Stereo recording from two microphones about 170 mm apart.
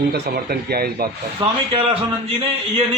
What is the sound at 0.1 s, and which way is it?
Speech, 65° right (ahead or behind).